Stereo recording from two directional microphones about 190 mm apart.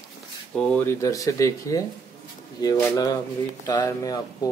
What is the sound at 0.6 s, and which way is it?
Speech, 5° left (ahead or behind).